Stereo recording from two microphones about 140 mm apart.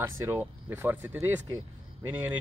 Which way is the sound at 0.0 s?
15° right (ahead or behind).